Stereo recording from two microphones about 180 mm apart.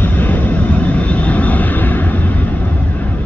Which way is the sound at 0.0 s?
10° left (ahead or behind).